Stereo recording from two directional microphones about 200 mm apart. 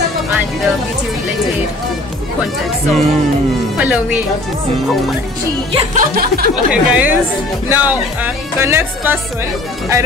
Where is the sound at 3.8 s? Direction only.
5° right (ahead or behind).